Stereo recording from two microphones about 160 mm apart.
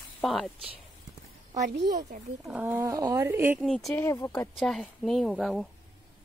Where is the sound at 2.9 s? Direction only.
20° right (ahead or behind).